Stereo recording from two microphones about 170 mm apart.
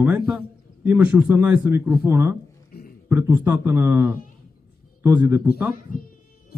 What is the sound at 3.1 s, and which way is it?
A man's voice, 10° right (ahead or behind).